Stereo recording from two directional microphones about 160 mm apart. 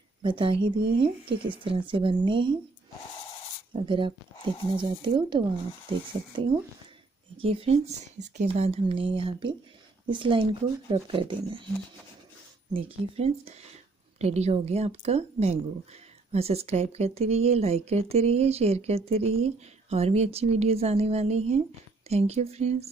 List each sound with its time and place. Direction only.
0.2 s speech: 30° right (ahead or behind)
3.7 s speech: 30° right (ahead or behind)
7.3 s speech: 35° right (ahead or behind)
12.7 s speech: 35° right (ahead or behind)